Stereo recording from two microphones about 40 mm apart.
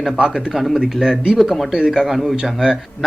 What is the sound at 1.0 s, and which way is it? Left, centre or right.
A man's voice, centre.